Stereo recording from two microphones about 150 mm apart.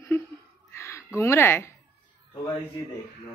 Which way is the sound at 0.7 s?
20° left (ahead or behind).